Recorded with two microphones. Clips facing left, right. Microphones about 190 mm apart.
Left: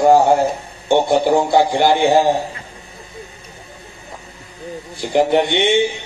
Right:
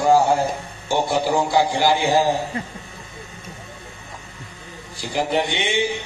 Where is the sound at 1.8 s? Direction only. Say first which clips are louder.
Left 5 dB; 60° left (ahead or behind).